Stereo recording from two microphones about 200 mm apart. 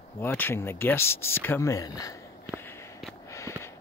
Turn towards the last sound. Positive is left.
turn(degrees=15)  # may be behind; listen again after turning